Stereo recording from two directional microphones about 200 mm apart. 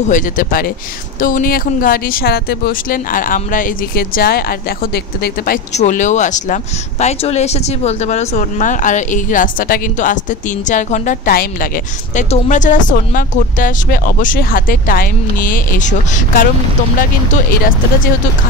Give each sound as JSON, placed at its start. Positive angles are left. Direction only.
{"t": 0.1, "sound": "speech", "side_deg": 45}
{"t": 5.7, "sound": "speech", "side_deg": 35}